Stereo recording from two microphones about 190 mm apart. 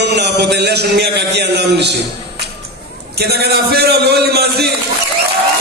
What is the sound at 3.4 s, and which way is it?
A man's voice, 55° right (ahead or behind).